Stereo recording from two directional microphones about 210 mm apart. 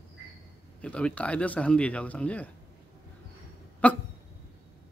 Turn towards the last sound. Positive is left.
turn(degrees=5)  # may be behind; listen again after turning